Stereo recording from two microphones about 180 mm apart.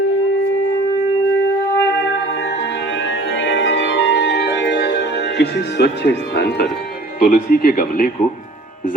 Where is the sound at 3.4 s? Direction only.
90° left; by 6.7 s 65° left (ahead or behind).